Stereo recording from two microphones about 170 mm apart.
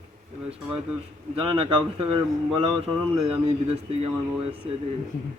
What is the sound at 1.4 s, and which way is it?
A man's voice, 30° right (ahead or behind).